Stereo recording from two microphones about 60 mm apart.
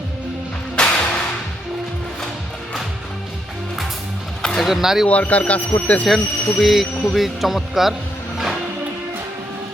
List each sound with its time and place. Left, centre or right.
0.8 s music: centre
4.4 s music: centre
4.7 s speech: centre
5.0 s speech: left
6.1 s speech: centre